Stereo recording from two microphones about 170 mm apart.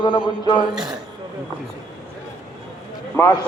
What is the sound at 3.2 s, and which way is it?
Speech, 15° left (ahead or behind).